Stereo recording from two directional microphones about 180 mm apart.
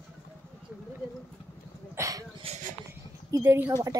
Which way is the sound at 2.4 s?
40° right (ahead or behind).